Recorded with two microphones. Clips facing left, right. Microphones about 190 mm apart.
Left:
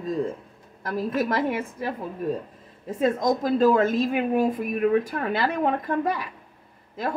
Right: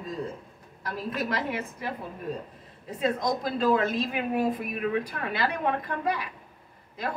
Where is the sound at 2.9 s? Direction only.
45° left (ahead or behind).